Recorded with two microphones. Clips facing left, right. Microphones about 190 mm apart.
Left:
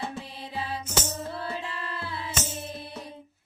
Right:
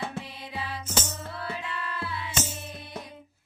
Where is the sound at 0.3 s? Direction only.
30° left (ahead or behind).